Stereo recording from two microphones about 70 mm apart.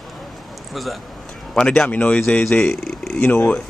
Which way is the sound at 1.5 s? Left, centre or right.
Centre.